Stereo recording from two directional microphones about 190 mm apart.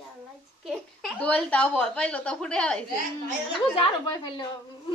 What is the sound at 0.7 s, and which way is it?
Speech, centre (ahead or behind).